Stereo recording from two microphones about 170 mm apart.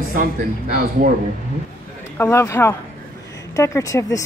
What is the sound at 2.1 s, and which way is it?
A woman's voice, 15° left (ahead or behind).